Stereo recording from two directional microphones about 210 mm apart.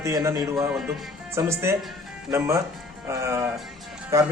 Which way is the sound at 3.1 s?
15° right (ahead or behind).